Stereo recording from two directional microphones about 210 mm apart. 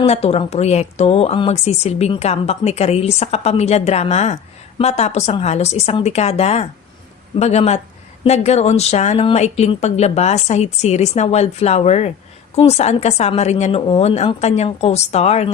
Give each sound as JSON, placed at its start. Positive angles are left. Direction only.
{"t": 0.0, "sound": "a woman's voice", "side_deg": 30}